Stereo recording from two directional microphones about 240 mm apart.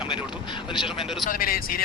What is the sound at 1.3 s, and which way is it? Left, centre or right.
Speech, left.